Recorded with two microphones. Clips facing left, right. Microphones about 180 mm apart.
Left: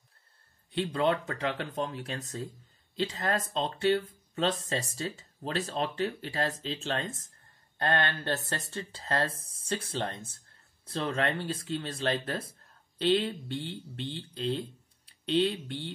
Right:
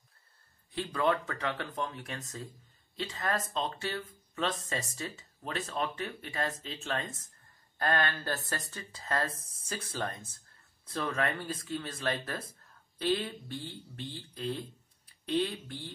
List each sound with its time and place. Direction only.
0.7 s speech: 25° left (ahead or behind)